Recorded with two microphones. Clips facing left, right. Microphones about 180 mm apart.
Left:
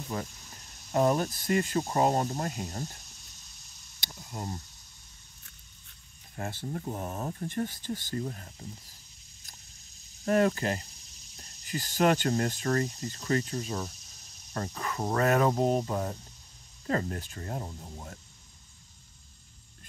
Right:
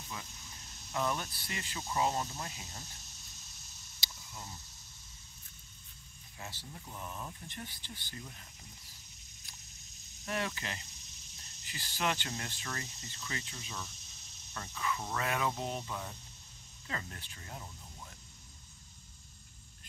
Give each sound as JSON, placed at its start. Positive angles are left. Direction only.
{"t": 0.1, "sound": "speech", "side_deg": 45}
{"t": 4.0, "sound": "cricket", "side_deg": 60}
{"t": 6.3, "sound": "speech", "side_deg": 55}
{"t": 10.2, "sound": "speech", "side_deg": 45}